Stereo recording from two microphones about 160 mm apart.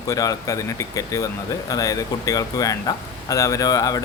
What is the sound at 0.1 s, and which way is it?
Speech, 20° left (ahead or behind).